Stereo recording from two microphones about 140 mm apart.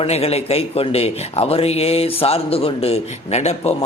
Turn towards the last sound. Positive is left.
turn(degrees=50)  # may be behind; listen again after turning